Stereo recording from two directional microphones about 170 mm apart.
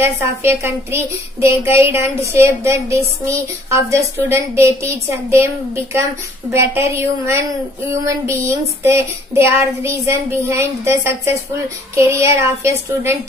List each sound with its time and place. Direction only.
0.0 s child singing: 15° right (ahead or behind)
6.5 s child singing: 15° right (ahead or behind)